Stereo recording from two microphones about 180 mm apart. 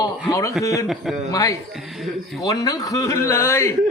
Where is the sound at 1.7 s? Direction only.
Centre (ahead or behind).